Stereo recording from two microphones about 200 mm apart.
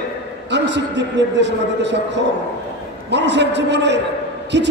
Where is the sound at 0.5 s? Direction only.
60° right (ahead or behind).